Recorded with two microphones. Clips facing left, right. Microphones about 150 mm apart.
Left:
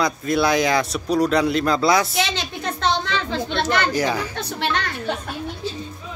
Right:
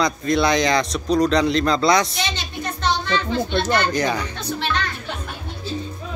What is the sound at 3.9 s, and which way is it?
Speech, 5° left (ahead or behind).